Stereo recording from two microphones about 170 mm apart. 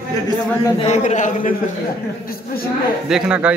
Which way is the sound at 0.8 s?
45° left (ahead or behind).